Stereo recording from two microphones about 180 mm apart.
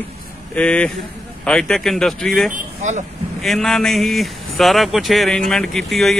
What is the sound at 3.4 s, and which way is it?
Speech, centre (ahead or behind).